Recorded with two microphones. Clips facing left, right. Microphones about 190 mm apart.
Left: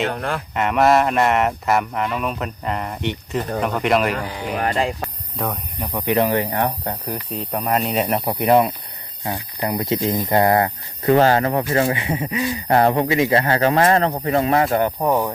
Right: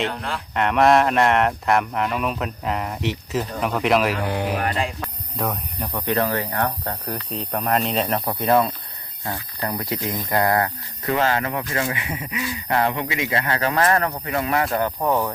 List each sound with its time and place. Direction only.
0.1 s speech: 55° left (ahead or behind)
0.5 s speech: centre (ahead or behind)
4.3 s speech: 60° right (ahead or behind)
4.6 s speech: 35° left (ahead or behind)
5.4 s speech: centre (ahead or behind)
5.9 s speech: 15° left (ahead or behind)
7.3 s speech: centre (ahead or behind)